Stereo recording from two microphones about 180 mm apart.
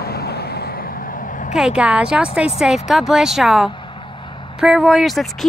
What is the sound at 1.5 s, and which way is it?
Speech, 5° right (ahead or behind).